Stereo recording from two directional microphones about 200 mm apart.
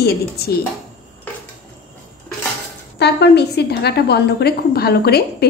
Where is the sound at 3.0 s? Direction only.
55° left (ahead or behind).